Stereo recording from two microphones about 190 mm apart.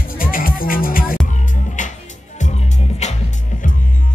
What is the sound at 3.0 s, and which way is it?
Music, 35° left (ahead or behind).